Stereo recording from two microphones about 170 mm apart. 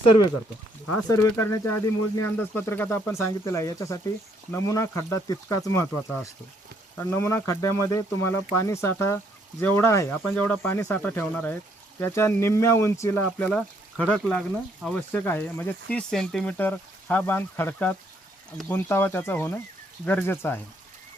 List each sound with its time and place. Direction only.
1.1 s speech: 15° left (ahead or behind)
6.9 s speech: 15° left (ahead or behind)
13.5 s speech: 5° left (ahead or behind)